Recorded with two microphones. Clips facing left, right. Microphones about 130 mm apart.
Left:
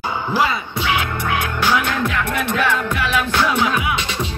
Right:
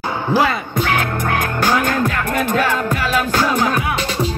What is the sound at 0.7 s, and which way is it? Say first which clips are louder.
Music: right 2 dB; 45° right (ahead or behind).